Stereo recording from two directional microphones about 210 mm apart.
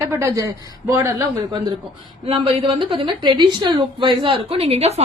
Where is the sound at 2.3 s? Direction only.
25° right (ahead or behind).